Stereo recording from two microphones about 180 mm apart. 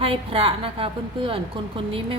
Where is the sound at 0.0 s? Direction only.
30° right (ahead or behind).